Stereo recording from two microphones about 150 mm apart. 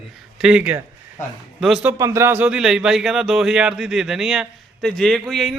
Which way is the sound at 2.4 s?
5° right (ahead or behind).